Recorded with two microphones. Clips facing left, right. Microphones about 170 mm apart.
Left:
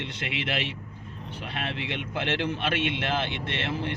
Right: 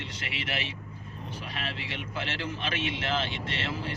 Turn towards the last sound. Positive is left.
turn(degrees=60)  # may be behind; listen again after turning